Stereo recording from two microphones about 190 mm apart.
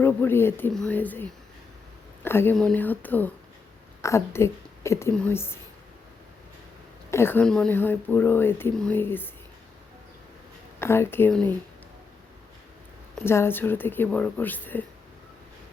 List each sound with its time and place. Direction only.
0.0 s speech: 10° left (ahead or behind)
7.1 s speech: 10° left (ahead or behind)
10.8 s speech: 10° left (ahead or behind)
13.2 s speech: 15° left (ahead or behind)